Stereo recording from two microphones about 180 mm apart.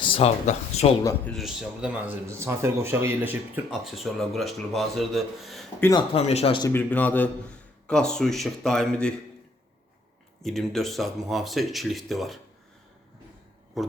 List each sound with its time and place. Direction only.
0.0 s a sound: 30° left (ahead or behind)
0.4 s speech: 35° left (ahead or behind)
1.0 s speech: 5° left (ahead or behind)
5.8 s speech: 20° left (ahead or behind)
6.1 s speech: 35° left (ahead or behind)
6.7 s speech: 10° left (ahead or behind)
10.4 s speech: centre (ahead or behind)
13.7 s speech: centre (ahead or behind)